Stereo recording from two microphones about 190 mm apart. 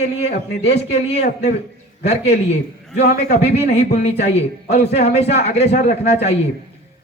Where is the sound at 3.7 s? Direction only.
40° left (ahead or behind).